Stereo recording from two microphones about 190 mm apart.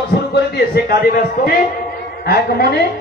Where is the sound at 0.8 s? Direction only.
55° left (ahead or behind).